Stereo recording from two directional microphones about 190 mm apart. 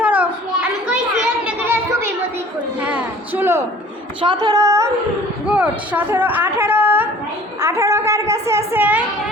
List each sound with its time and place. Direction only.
0.0 s children playing: 10° right (ahead or behind)
1.5 s children playing: 10° right (ahead or behind)
2.8 s a sound: 10° right (ahead or behind)
4.2 s a woman's voice: 25° right (ahead or behind); by 9.0 s 10° right (ahead or behind)